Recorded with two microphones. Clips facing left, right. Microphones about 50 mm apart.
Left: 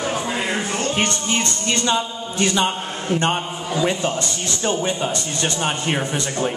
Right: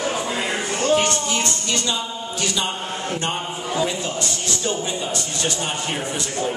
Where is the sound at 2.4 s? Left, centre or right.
Left.